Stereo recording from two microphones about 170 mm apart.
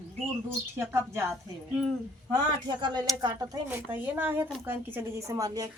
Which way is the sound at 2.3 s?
25° right (ahead or behind).